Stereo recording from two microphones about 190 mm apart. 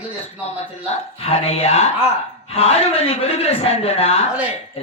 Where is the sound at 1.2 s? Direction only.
35° left (ahead or behind).